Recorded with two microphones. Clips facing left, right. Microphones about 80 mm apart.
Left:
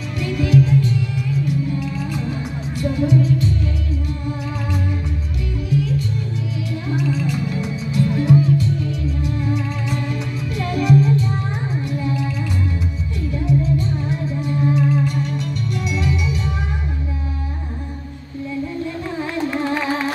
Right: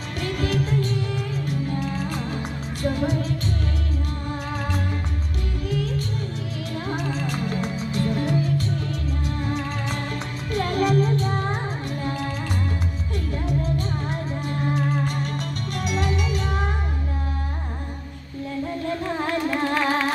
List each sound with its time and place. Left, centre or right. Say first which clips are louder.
0.2 s music: left 7 dB; right
5.7 s music: left 6 dB; right
13.3 s music: left 7 dB; right